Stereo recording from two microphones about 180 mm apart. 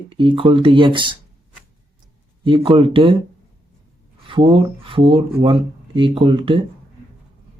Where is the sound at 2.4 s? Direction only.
30° right (ahead or behind).